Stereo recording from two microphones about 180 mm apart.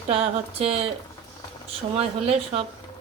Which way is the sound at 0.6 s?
35° right (ahead or behind).